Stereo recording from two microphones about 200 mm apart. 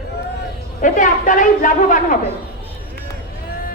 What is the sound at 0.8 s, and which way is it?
A woman's voice, 40° left (ahead or behind).